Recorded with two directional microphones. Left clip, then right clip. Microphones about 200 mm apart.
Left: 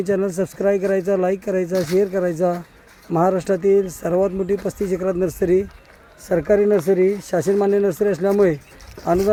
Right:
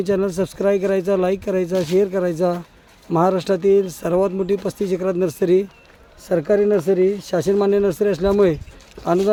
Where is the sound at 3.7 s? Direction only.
15° right (ahead or behind).